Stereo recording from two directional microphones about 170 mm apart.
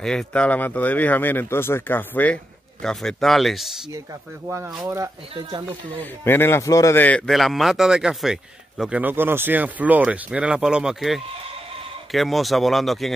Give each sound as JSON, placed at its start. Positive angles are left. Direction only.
{"t": 0.0, "sound": "speech", "side_deg": 5}
{"t": 4.5, "sound": "speech", "side_deg": -15}
{"t": 5.3, "sound": "speech", "side_deg": -30}
{"t": 6.2, "sound": "a man's voice", "side_deg": 15}